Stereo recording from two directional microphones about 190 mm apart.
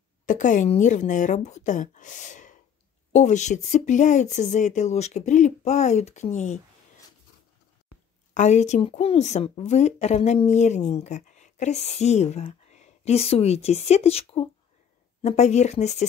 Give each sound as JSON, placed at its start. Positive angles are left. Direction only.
{"t": 0.3, "sound": "a woman's voice", "side_deg": 40}
{"t": 8.4, "sound": "a woman's voice", "side_deg": 35}